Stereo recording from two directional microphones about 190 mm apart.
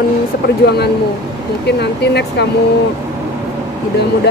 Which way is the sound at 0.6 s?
55° left (ahead or behind).